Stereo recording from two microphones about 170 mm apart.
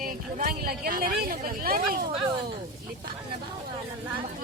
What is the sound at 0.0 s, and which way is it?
Speech, 60° right (ahead or behind).